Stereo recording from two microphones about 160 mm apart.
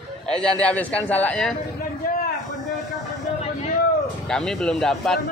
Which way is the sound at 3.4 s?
45° left (ahead or behind).